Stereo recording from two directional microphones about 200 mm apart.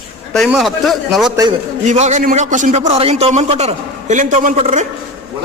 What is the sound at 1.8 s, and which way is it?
A man's voice, 35° right (ahead or behind).